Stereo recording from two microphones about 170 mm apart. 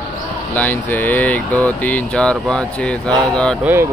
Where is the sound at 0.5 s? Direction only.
10° left (ahead or behind).